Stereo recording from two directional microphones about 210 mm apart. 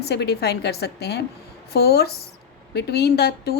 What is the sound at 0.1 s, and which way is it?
A woman's voice, 55° left (ahead or behind).